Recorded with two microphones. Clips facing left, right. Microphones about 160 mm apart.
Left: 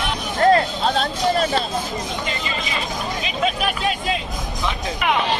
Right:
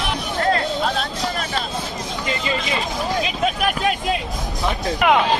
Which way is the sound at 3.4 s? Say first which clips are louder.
Even; 50° right (ahead or behind).